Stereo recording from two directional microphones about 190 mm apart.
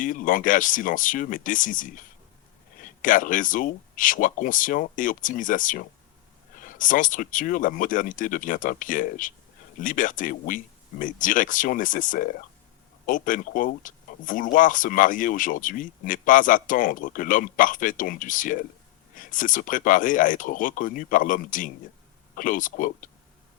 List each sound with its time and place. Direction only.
0.0 s speech: 45° left (ahead or behind)